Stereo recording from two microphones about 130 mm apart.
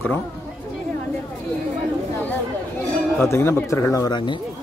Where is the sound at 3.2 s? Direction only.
20° left (ahead or behind).